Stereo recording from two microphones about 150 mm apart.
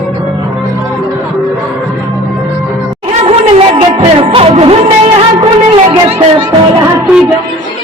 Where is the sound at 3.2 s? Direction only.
40° right (ahead or behind).